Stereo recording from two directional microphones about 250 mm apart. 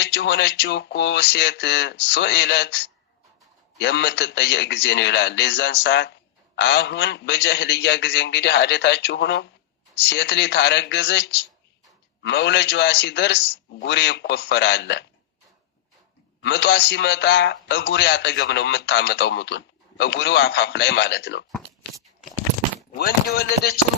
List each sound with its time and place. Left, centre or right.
0.0 s a man's voice: left
16.4 s a man's voice: left
22.9 s speech: left